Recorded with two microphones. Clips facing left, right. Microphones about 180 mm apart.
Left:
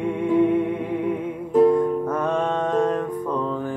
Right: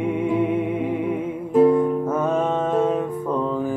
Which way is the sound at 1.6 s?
5° right (ahead or behind).